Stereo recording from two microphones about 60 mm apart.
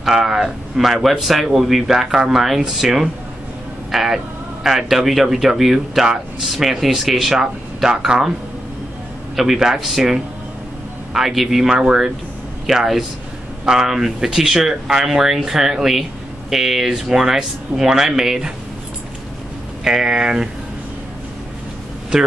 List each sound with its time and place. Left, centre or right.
0.0 s speech: centre
9.4 s speech: centre
19.8 s speech: centre